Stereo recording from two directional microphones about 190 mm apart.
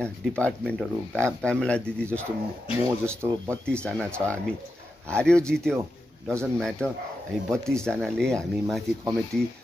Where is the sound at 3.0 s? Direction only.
20° right (ahead or behind).